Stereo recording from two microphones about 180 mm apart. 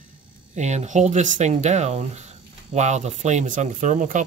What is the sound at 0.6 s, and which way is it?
Speech, 40° right (ahead or behind).